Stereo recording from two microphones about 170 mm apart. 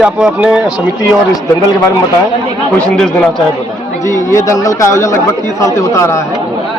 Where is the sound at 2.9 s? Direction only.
5° left (ahead or behind).